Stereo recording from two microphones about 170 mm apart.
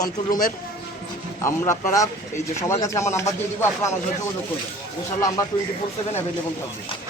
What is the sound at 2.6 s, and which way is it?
Speech, 15° left (ahead or behind).